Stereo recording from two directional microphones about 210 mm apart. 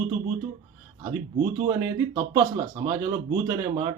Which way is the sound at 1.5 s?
15° right (ahead or behind).